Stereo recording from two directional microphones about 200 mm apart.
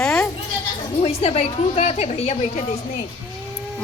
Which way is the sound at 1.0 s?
30° left (ahead or behind).